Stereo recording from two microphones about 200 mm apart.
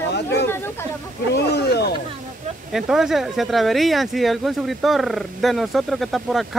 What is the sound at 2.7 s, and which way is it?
Speech, centre (ahead or behind).